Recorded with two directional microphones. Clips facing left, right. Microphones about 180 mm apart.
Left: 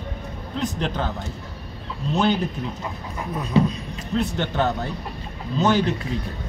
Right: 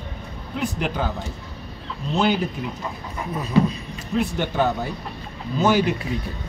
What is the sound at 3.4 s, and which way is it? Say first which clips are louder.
Speech: even; 5° right (ahead or behind).